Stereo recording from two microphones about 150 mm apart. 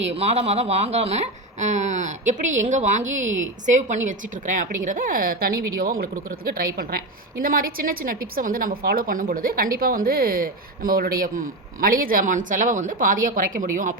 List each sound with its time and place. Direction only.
0.2 s speech: 45° right (ahead or behind); by 13.9 s 65° right (ahead or behind)